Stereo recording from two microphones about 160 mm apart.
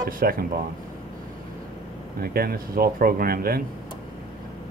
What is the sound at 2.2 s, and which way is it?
Speech, 70° right (ahead or behind).